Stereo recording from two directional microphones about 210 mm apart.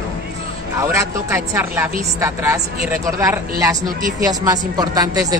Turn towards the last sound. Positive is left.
turn(degrees=-15)  # may be behind; listen again after turning